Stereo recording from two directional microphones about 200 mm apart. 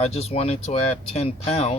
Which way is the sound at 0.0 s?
30° left (ahead or behind).